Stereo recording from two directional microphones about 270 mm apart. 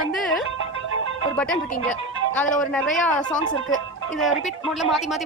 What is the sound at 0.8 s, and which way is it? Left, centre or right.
Music, right.